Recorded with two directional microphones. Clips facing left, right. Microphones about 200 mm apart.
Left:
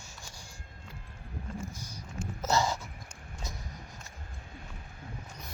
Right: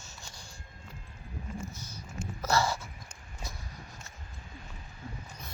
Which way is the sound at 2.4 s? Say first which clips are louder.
Even; 20° left (ahead or behind).